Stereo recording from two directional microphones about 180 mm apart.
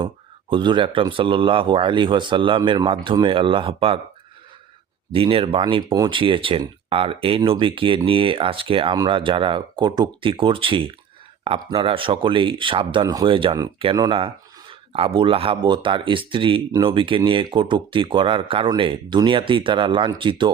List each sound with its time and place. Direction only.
0.5 s speech: 25° right (ahead or behind)
5.1 s speech: 30° right (ahead or behind)